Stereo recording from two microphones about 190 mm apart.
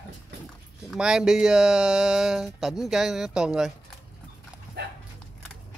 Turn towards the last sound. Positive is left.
turn(degrees=-60)  # may be behind; listen again after turning